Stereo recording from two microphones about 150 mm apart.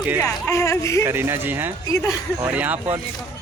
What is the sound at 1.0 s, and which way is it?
Speech, 15° right (ahead or behind).